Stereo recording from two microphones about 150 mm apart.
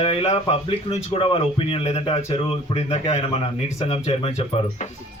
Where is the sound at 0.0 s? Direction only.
40° left (ahead or behind).